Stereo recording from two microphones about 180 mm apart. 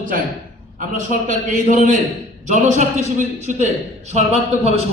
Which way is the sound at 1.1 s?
45° right (ahead or behind).